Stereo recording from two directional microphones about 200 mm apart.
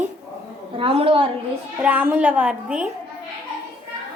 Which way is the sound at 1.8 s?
10° right (ahead or behind).